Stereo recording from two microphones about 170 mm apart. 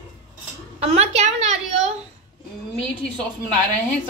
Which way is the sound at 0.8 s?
40° right (ahead or behind).